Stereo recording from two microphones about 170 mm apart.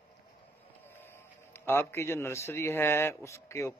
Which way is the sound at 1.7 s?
15° left (ahead or behind).